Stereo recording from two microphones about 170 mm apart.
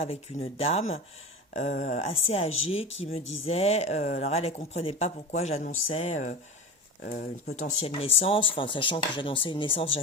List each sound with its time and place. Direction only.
0.0 s speech: 35° left (ahead or behind)
1.7 s speech: 45° left (ahead or behind)
7.0 s speech: 60° left (ahead or behind)
7.8 s speech: 35° left (ahead or behind)